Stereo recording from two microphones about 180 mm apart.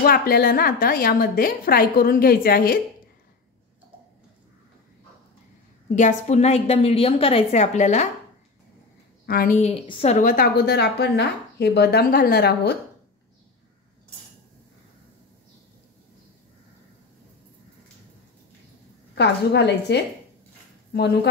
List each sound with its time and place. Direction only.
0.0 s a woman's voice: 55° left (ahead or behind)
5.9 s a woman's voice: 40° left (ahead or behind)
9.2 s a woman's voice: 55° left (ahead or behind)
9.6 s a woman's voice: 30° left (ahead or behind)
10.1 s a woman's voice: 50° left (ahead or behind); by 12.7 s 65° left (ahead or behind)
19.1 s a woman's voice: 70° left (ahead or behind)